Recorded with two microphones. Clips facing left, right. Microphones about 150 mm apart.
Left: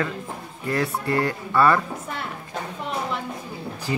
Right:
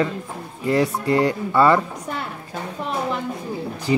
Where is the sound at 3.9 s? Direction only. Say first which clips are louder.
Right 8 dB; 20° right (ahead or behind).